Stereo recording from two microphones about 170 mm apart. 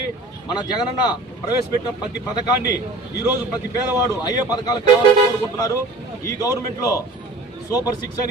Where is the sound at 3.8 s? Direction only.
15° right (ahead or behind).